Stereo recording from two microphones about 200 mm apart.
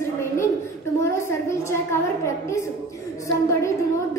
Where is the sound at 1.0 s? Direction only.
15° left (ahead or behind).